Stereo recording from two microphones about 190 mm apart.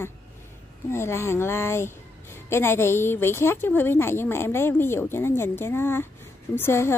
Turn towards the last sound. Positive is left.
turn(degrees=10)  # may be behind; listen again after turning